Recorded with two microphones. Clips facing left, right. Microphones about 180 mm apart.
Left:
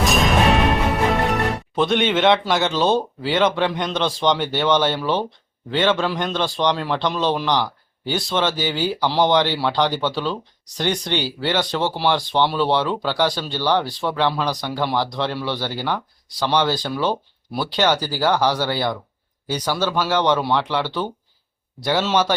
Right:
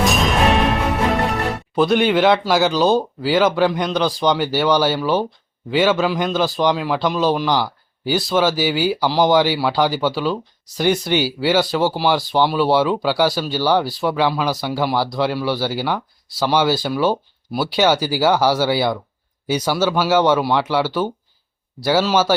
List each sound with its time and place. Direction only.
1.7 s a man's voice: centre (ahead or behind)